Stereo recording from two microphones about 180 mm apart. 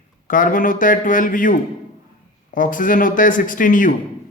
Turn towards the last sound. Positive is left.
turn(degrees=50)  # may be behind; listen again after turning